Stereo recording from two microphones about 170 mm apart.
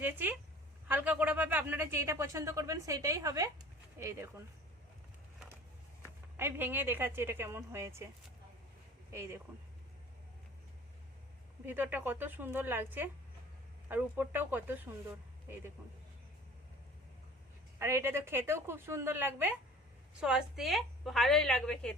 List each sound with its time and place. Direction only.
0.0 s speech: 10° right (ahead or behind)
6.3 s speech: 15° right (ahead or behind)
9.1 s speech: 15° right (ahead or behind)
11.6 s speech: 10° right (ahead or behind)
17.7 s a woman's voice: 15° right (ahead or behind); by 21.9 s 5° left (ahead or behind)